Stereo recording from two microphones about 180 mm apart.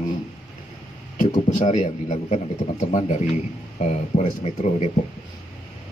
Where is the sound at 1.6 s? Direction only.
40° left (ahead or behind).